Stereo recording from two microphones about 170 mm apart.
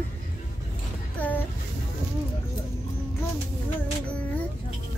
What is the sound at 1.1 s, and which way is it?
Music, 10° left (ahead or behind).